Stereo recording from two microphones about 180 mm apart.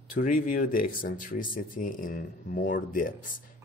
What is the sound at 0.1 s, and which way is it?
Speech, 50° left (ahead or behind).